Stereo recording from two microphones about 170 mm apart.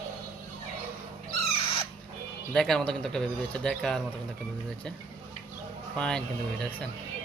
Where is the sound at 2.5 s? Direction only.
Centre (ahead or behind).